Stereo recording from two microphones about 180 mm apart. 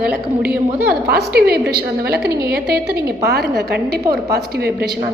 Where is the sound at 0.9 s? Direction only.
60° right (ahead or behind).